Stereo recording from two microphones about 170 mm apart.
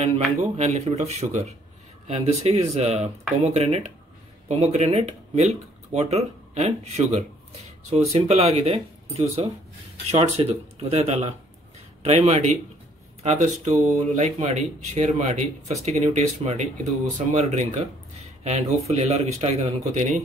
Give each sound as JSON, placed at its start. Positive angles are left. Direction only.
{"t": 0.0, "sound": "a man's voice", "side_deg": -40}